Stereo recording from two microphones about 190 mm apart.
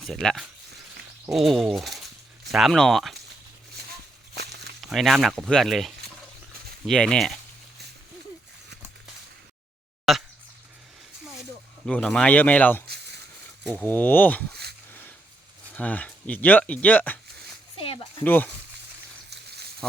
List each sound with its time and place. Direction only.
0.1 s speech: centre (ahead or behind)
4.8 s speech: centre (ahead or behind)
10.1 s speech: centre (ahead or behind)
11.9 s speech: 5° left (ahead or behind)
14.5 s a sound: 60° right (ahead or behind)
15.7 s speech: 10° left (ahead or behind)
18.2 s speech: 10° left (ahead or behind)
19.3 s a sound: 60° right (ahead or behind)